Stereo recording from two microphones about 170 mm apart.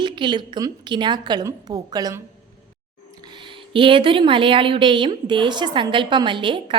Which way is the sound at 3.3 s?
30° right (ahead or behind).